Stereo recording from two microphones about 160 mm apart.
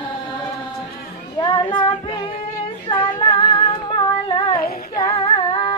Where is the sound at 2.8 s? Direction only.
30° left (ahead or behind).